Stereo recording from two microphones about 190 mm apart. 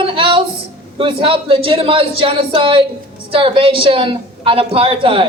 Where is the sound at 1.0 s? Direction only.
25° right (ahead or behind).